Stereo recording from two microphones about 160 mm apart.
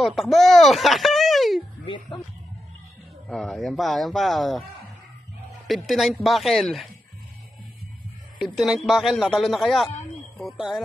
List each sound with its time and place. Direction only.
0.0 s speech: centre (ahead or behind)
3.3 s a man's voice: centre (ahead or behind)
5.7 s a man's voice: centre (ahead or behind)
8.4 s a man's voice: centre (ahead or behind)